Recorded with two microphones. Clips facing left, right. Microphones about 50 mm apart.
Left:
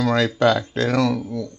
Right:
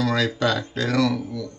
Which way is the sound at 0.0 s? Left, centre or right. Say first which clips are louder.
Left 3 dB; left.